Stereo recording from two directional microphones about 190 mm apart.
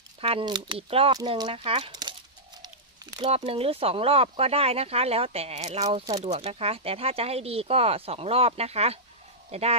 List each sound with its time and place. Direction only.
0.2 s speech: 30° right (ahead or behind)
3.2 s speech: 30° right (ahead or behind)